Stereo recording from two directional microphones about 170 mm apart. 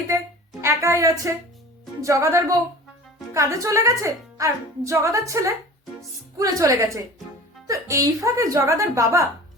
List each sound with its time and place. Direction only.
0.6 s speech: 15° right (ahead or behind)